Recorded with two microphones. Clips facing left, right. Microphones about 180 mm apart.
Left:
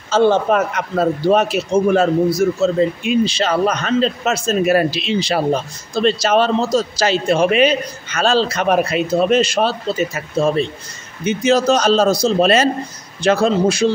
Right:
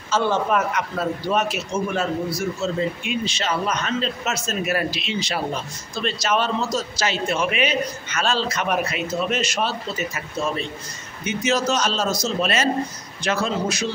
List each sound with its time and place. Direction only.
0.1 s a man's voice: 30° left (ahead or behind)